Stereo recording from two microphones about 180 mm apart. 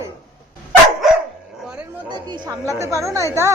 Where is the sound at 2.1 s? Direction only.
25° right (ahead or behind).